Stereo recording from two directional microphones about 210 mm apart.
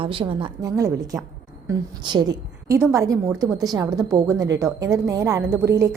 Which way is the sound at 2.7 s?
15° right (ahead or behind).